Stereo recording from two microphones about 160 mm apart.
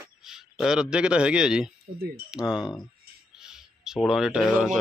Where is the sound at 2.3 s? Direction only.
5° right (ahead or behind).